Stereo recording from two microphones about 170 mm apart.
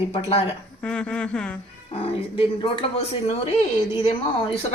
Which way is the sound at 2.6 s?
35° left (ahead or behind).